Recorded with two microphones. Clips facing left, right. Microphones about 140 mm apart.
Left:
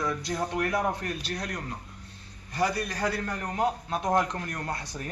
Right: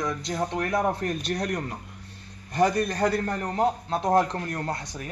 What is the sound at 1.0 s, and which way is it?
Speech, 45° right (ahead or behind).